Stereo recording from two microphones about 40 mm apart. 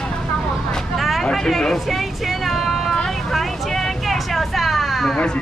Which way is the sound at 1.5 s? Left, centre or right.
Centre.